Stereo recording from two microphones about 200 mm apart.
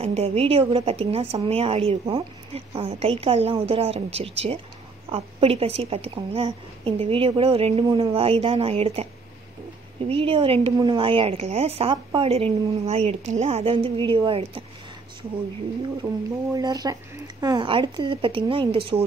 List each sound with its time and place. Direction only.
0.0 s a woman's voice: 30° right (ahead or behind)
10.0 s a woman's voice: 25° right (ahead or behind)
16.5 s a woman's voice: 20° right (ahead or behind)